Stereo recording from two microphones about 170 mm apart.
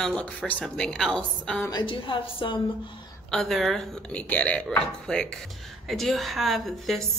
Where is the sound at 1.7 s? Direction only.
30° left (ahead or behind).